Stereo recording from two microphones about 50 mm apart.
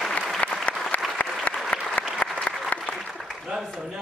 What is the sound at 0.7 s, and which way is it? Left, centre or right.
Applause, left.